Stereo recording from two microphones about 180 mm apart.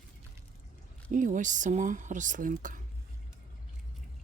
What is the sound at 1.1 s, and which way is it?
Speech, 45° right (ahead or behind).